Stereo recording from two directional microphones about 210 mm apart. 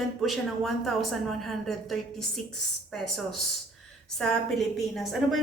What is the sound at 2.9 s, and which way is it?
A woman's voice, centre (ahead or behind).